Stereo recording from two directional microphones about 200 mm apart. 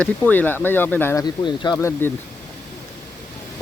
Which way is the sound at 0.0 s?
10° left (ahead or behind).